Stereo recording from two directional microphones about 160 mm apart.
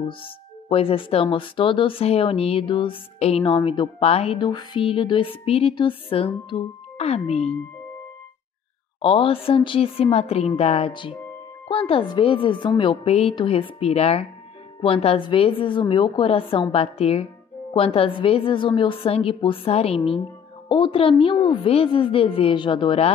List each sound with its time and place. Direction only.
0.2 s speech: 35° left (ahead or behind)
9.0 s speech: 35° left (ahead or behind)